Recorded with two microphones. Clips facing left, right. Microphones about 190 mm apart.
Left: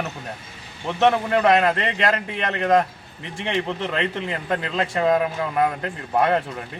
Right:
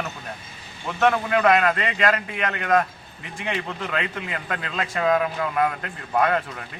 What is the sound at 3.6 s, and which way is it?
Speech, 25° left (ahead or behind).